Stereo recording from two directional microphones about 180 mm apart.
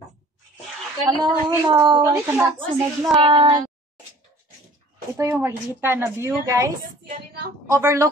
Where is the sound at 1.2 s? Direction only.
25° right (ahead or behind).